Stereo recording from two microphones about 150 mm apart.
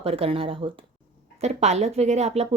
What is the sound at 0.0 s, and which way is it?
A woman's voice, 40° right (ahead or behind).